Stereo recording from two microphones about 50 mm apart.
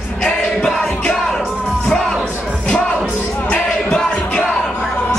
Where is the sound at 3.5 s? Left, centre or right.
Centre.